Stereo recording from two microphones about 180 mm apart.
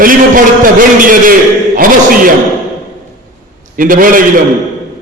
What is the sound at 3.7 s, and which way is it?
Speech, 50° right (ahead or behind).